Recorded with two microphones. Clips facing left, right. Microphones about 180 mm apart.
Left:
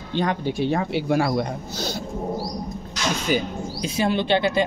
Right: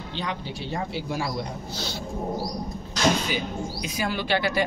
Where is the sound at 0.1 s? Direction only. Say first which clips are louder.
Left 10 dB; 50° left (ahead or behind).